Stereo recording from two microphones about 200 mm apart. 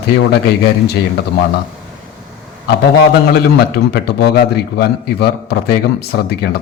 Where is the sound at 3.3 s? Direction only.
55° left (ahead or behind).